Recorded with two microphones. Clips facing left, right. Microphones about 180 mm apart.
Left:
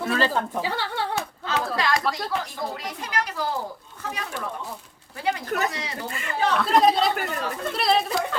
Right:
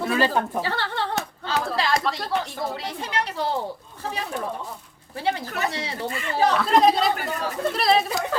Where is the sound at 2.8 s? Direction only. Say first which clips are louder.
Right 1 dB; 30° right (ahead or behind).